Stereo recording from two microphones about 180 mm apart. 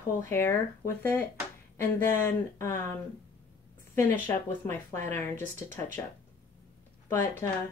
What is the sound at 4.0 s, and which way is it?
Speech, 15° left (ahead or behind).